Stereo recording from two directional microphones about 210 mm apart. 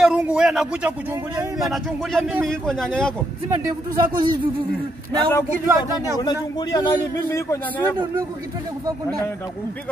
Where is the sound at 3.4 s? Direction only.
20° right (ahead or behind).